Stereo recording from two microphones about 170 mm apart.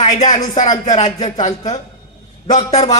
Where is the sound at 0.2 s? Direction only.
45° left (ahead or behind).